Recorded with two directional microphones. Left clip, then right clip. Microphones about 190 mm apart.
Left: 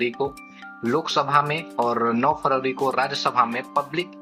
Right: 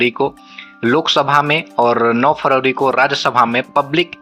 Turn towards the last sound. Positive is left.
turn(degrees=-45)  # may be behind; listen again after turning